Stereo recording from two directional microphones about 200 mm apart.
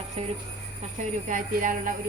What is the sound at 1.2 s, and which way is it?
Speech, 40° right (ahead or behind).